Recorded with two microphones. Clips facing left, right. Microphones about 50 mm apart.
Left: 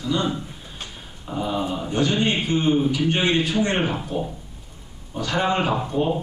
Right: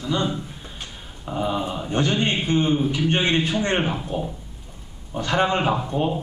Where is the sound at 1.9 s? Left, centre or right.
Right.